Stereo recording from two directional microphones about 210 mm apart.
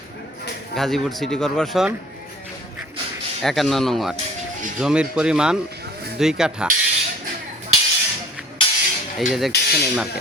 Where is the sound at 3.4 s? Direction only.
Centre (ahead or behind).